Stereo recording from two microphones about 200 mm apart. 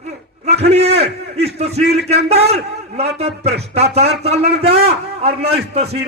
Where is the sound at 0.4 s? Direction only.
30° right (ahead or behind).